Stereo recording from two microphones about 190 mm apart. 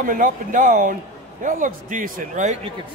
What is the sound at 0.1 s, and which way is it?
A man's voice, 45° right (ahead or behind).